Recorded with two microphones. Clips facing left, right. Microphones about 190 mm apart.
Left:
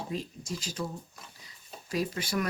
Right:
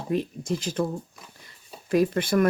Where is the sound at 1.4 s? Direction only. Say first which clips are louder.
Right 2 dB; 55° right (ahead or behind).